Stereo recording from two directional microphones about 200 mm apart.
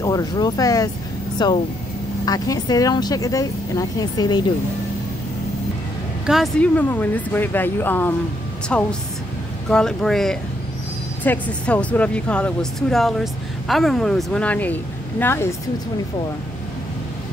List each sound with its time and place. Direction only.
0.0 s speech: 20° left (ahead or behind)
6.2 s speech: centre (ahead or behind)